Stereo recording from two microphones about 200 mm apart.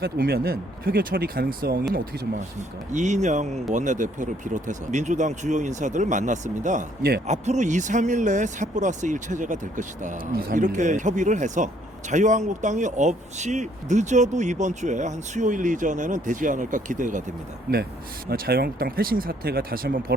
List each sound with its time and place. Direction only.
0.0 s speech: 50° right (ahead or behind)
18.3 s speech: 50° right (ahead or behind)